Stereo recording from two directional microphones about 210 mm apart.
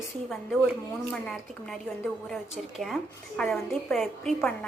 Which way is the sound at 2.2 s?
Centre (ahead or behind).